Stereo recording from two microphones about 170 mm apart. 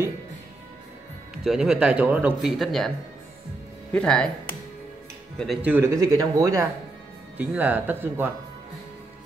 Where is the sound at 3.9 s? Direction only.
5° left (ahead or behind).